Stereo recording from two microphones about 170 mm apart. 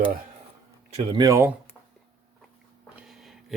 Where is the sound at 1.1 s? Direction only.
20° right (ahead or behind).